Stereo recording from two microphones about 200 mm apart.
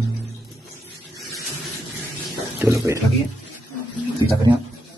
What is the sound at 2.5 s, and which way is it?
Speech, 15° right (ahead or behind).